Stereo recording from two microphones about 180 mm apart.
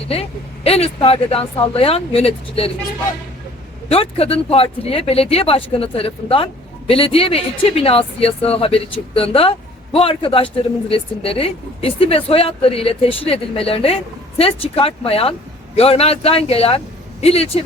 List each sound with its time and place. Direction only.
0.1 s speech: 35° left (ahead or behind)
3.8 s speech: 35° left (ahead or behind)